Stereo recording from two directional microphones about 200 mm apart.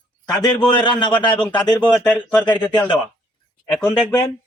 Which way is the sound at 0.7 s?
25° left (ahead or behind).